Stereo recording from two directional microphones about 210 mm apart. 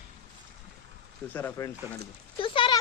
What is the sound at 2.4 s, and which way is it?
Speech, 25° left (ahead or behind).